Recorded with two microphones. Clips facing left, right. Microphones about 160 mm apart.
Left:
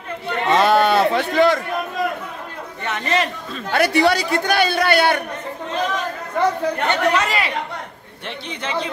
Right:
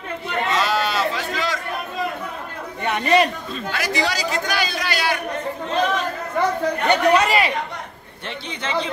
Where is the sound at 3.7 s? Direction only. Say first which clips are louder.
Left 8 dB; 60° left (ahead or behind).